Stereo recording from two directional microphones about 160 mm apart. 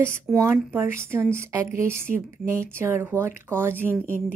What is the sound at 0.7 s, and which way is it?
A woman's voice, 15° right (ahead or behind).